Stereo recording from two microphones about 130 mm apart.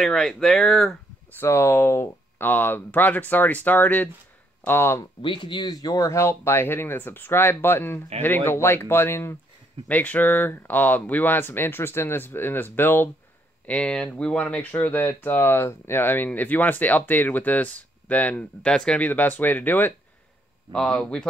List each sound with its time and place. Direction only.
0.0 s speech: 5° left (ahead or behind)
1.4 s speech: 20° left (ahead or behind)
5.2 s speech: 40° left (ahead or behind); by 21.3 s 5° left (ahead or behind)